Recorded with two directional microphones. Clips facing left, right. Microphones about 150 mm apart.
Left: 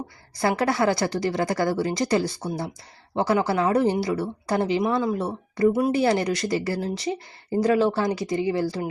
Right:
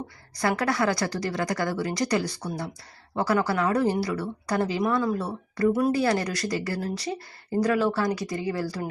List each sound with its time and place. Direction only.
0.3 s a woman's voice: 25° left (ahead or behind)